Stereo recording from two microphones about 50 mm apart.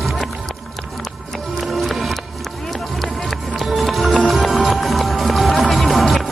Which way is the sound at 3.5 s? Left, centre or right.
Centre.